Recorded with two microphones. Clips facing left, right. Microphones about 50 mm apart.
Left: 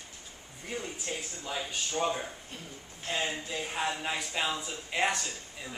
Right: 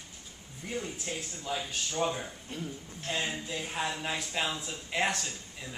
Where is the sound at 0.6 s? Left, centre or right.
Centre.